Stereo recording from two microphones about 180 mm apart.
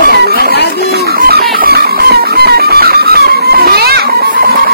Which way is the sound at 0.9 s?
55° right (ahead or behind).